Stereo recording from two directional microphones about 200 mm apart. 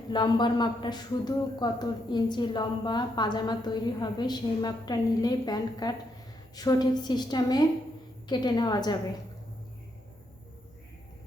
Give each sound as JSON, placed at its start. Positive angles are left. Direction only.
{"t": 0.1, "sound": "a woman's voice", "side_deg": 20}